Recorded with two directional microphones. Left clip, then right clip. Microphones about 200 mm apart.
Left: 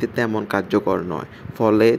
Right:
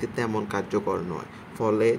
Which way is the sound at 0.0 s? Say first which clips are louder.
Left 6 dB; 25° left (ahead or behind).